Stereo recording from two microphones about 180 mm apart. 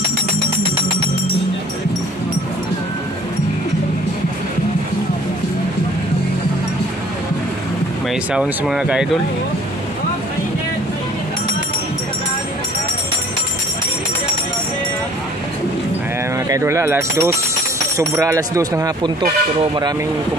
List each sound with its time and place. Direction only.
8.1 s speech: 5° right (ahead or behind)
16.4 s speech: 15° right (ahead or behind)